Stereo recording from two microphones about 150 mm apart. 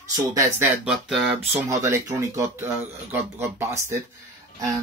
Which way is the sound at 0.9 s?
5° right (ahead or behind).